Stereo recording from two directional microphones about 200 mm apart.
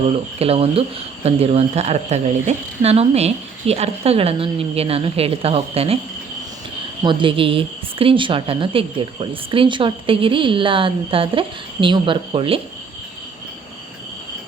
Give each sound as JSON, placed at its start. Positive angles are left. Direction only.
{"t": 0.3, "sound": "speech", "side_deg": -30}
{"t": 7.0, "sound": "a woman's voice", "side_deg": -25}